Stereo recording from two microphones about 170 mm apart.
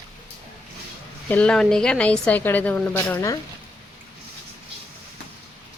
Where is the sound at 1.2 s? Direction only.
10° left (ahead or behind).